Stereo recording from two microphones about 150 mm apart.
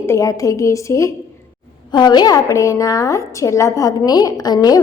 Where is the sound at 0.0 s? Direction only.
20° left (ahead or behind).